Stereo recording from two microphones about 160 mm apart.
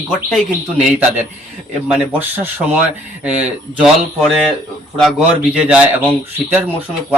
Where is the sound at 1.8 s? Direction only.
10° right (ahead or behind).